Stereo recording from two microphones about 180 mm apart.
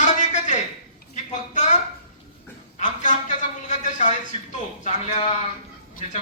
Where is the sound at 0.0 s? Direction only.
40° left (ahead or behind).